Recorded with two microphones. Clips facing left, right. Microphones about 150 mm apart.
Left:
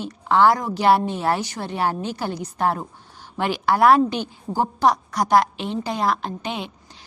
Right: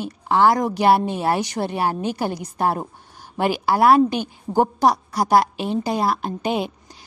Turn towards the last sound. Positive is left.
turn(degrees=-45)  # may be behind; listen again after turning